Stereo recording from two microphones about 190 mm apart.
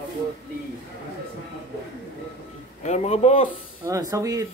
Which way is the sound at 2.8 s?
35° left (ahead or behind).